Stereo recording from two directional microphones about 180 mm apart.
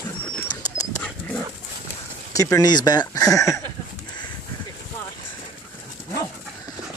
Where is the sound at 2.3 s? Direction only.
20° left (ahead or behind).